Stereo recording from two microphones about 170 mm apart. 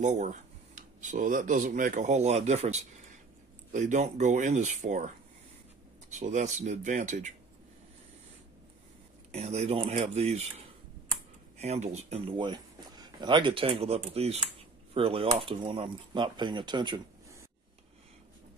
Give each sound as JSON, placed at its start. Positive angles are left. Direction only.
{"t": 0.0, "sound": "speech", "side_deg": -45}
{"t": 9.3, "sound": "speech", "side_deg": -40}
{"t": 11.5, "sound": "speech", "side_deg": -40}